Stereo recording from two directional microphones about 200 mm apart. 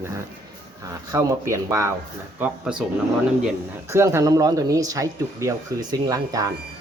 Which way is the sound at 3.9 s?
15° right (ahead or behind).